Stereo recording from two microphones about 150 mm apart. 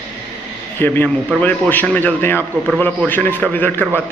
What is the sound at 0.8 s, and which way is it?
A man's voice, 15° left (ahead or behind).